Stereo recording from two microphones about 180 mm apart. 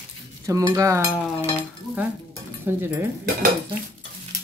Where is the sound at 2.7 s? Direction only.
10° right (ahead or behind).